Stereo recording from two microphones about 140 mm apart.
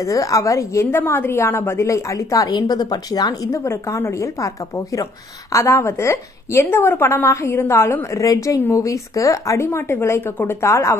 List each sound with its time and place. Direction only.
0.0 s a woman's voice: 20° left (ahead or behind)
5.5 s a woman's voice: 20° left (ahead or behind)